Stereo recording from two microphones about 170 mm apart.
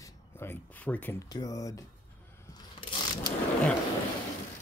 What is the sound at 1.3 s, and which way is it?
Speech, 20° left (ahead or behind).